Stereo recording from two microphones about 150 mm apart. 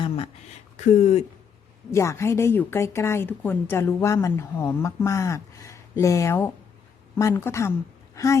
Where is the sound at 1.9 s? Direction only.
20° left (ahead or behind).